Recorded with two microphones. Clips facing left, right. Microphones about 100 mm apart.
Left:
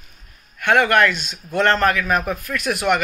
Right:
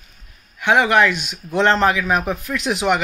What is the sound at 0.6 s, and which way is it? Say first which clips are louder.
A man's voice: right 1 dB; 15° right (ahead or behind).